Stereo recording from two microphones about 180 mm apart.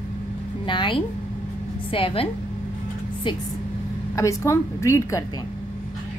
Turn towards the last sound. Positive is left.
turn(degrees=15)  # may be behind; listen again after turning